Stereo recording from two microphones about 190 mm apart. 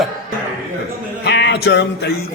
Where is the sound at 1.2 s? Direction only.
65° left (ahead or behind).